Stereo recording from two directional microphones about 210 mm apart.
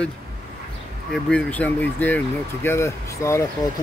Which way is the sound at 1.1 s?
5° left (ahead or behind).